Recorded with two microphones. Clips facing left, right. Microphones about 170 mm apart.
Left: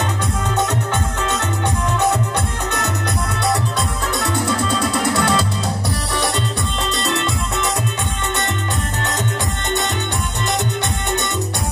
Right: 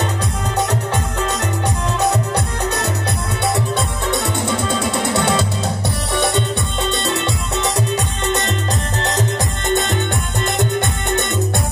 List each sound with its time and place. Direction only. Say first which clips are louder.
4.1 s music: right 1 dB; 25° right (ahead or behind)